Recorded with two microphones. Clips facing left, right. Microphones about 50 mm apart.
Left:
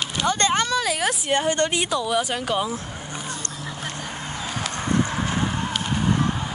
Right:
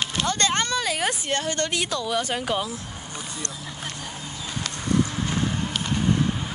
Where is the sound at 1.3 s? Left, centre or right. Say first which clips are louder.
Left 4 dB; left; by 2.6 s centre.